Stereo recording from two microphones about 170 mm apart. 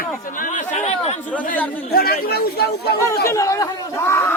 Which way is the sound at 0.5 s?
45° left (ahead or behind).